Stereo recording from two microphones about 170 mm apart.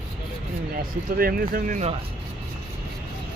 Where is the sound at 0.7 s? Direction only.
60° right (ahead or behind).